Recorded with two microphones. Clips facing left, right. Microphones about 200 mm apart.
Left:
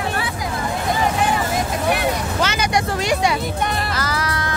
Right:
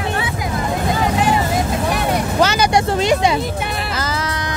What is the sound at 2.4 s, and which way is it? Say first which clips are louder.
Speech: right 4 dB; 35° right (ahead or behind).